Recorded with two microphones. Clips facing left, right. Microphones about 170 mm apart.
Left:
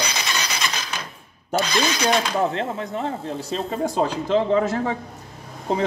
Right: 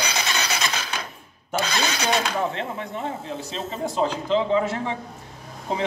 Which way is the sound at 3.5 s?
50° left (ahead or behind).